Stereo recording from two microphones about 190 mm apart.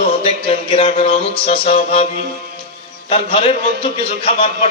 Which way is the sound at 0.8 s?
35° left (ahead or behind).